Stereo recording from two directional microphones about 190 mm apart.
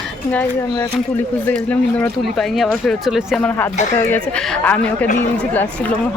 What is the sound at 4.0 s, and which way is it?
Speech, 10° left (ahead or behind).